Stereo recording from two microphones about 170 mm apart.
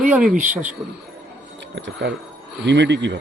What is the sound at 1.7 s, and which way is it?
Speech, 90° right.